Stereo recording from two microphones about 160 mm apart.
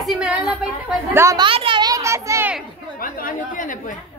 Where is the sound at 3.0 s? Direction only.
60° left (ahead or behind).